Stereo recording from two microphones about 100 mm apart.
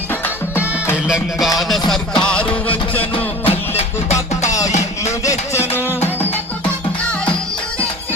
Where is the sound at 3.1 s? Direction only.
70° left (ahead or behind).